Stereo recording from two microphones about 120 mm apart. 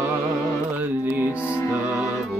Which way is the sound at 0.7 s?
15° right (ahead or behind).